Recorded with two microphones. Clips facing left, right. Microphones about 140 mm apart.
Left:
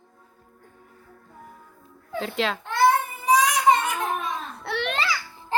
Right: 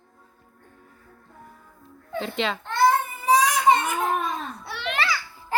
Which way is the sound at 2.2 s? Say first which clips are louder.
Left 1 dB; centre (ahead or behind).